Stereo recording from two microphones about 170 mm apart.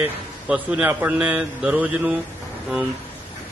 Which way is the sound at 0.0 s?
5° right (ahead or behind).